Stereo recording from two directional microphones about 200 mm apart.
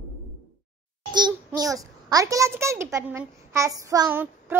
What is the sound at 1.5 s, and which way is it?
A child's voice, 15° right (ahead or behind).